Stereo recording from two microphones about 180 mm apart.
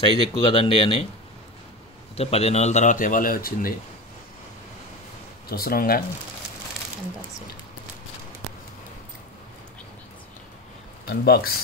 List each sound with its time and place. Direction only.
0.0 s speech: 30° left (ahead or behind)
2.1 s speech: 35° left (ahead or behind); by 3.7 s 55° left (ahead or behind)
5.5 s speech: 55° left (ahead or behind)
11.2 s speech: 60° left (ahead or behind)